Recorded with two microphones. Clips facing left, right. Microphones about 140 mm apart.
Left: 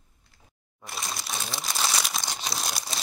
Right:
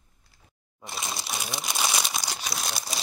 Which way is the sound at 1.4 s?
20° right (ahead or behind).